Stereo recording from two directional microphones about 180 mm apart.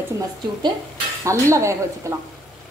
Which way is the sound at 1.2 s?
15° right (ahead or behind).